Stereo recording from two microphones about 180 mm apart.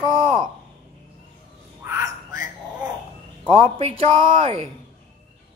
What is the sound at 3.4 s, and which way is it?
Speech, 30° right (ahead or behind).